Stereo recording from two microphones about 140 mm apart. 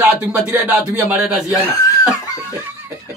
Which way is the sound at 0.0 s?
10° right (ahead or behind).